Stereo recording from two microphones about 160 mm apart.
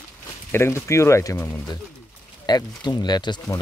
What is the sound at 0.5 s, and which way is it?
Speech, 15° left (ahead or behind).